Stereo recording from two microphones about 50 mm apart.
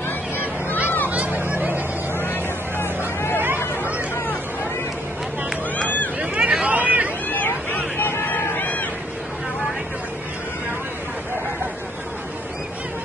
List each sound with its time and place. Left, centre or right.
1.1 s hubbub: right
1.4 s vehicle: right
2.1 s vehicle: left
3.5 s chatter: left
6.1 s a sound: right
6.6 s vehicle: right
7.2 s hubbub: left
8.5 s a sound: left